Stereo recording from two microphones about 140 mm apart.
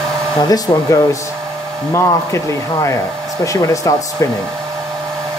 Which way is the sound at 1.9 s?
20° left (ahead or behind).